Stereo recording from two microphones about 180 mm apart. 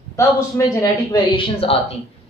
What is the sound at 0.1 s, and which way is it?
A man's voice, 15° left (ahead or behind).